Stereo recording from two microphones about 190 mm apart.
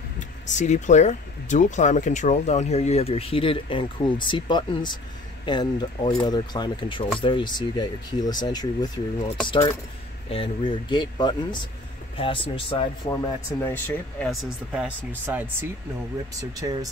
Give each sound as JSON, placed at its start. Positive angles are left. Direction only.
{"t": 0.5, "sound": "speech", "side_deg": 40}
{"t": 10.3, "sound": "speech", "side_deg": 25}
{"t": 14.3, "sound": "speech", "side_deg": 0}
{"t": 16.3, "sound": "speech", "side_deg": -20}